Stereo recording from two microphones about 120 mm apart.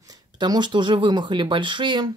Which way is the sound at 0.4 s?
40° right (ahead or behind).